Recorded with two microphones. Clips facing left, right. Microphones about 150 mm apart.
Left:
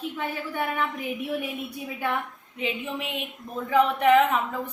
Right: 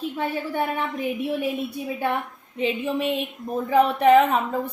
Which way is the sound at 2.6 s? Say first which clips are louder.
Right 6 dB; 35° right (ahead or behind).